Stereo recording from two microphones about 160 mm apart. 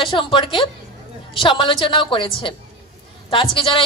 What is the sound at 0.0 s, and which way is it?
A woman's voice, 30° left (ahead or behind).